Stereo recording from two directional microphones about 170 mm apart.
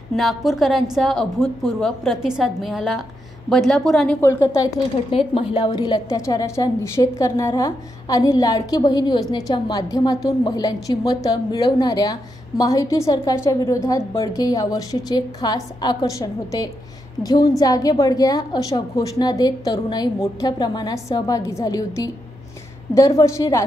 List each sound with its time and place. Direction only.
0.1 s a woman's voice: centre (ahead or behind)
4.2 s a woman's voice: 15° left (ahead or behind)
5.1 s a woman's voice: 35° left (ahead or behind); by 23.6 s 20° left (ahead or behind)